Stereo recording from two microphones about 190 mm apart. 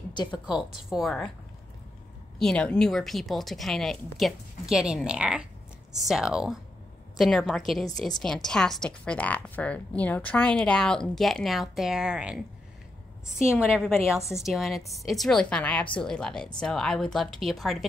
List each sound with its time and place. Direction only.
0.1 s a woman's voice: 25° left (ahead or behind)
0.5 s a woman's voice: 5° right (ahead or behind)
2.3 s a woman's voice: 5° left (ahead or behind)
13.6 s a woman's voice: 5° right (ahead or behind)